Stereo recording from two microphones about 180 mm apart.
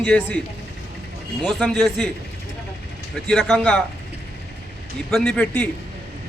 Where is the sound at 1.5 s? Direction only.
Centre (ahead or behind).